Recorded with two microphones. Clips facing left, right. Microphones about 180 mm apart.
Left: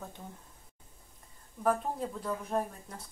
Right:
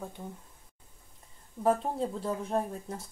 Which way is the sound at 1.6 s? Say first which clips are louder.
Right 3 dB; 25° right (ahead or behind).